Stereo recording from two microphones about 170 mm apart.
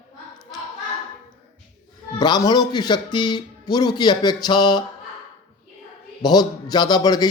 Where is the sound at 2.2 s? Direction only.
25° left (ahead or behind).